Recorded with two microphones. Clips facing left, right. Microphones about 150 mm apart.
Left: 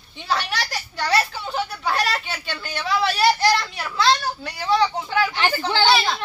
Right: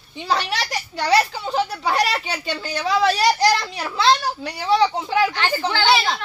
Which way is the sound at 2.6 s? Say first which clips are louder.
Right 3 dB; 35° right (ahead or behind).